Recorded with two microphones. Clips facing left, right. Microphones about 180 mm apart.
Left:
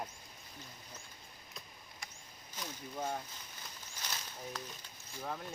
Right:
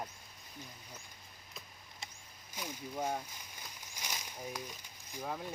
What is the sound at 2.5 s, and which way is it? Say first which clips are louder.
Speech: right 2 dB; 10° right (ahead or behind).